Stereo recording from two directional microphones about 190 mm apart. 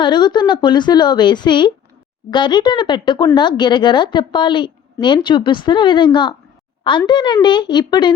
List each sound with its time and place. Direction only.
0.0 s a woman's voice: 25° left (ahead or behind)